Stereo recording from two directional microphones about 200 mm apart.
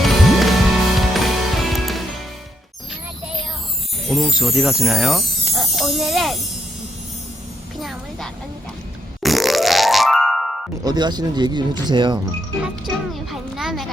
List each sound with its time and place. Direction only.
0.0 s music: centre (ahead or behind)
4.0 s music: centre (ahead or behind)
7.8 s a sound: centre (ahead or behind)
9.2 s music: centre (ahead or behind)
10.8 s speech: 20° right (ahead or behind)
12.6 s music: centre (ahead or behind)